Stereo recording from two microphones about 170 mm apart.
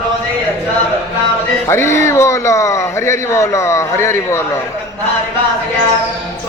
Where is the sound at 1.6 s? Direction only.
15° left (ahead or behind).